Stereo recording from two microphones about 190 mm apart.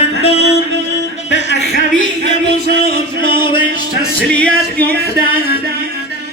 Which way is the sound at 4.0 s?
5° left (ahead or behind).